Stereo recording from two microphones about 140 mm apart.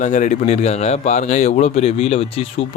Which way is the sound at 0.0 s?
60° left (ahead or behind).